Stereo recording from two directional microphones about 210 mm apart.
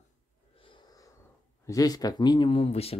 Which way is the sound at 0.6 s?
20° left (ahead or behind).